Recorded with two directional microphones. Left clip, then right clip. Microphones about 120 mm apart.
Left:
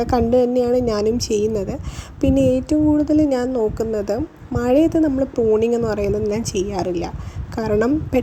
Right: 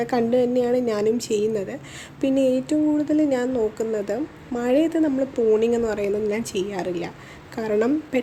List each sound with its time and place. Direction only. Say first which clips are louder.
0.0 s a woman's voice: left 4 dB; 45° left (ahead or behind)